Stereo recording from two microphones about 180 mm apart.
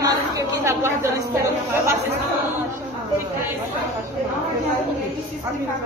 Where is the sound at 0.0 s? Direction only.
15° right (ahead or behind).